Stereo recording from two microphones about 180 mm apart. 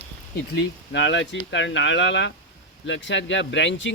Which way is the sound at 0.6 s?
85° left.